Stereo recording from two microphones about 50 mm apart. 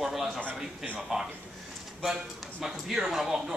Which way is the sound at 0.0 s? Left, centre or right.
Centre.